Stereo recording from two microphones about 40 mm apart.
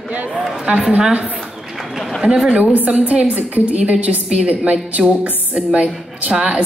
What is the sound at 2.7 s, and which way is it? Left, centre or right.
A woman's voice, right.